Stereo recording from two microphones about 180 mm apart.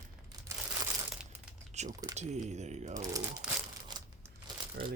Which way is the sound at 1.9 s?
20° right (ahead or behind).